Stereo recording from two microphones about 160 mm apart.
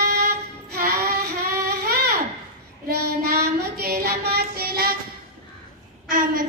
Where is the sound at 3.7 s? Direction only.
80° right.